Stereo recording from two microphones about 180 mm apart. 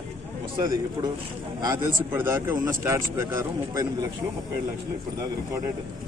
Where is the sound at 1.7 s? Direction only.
15° right (ahead or behind).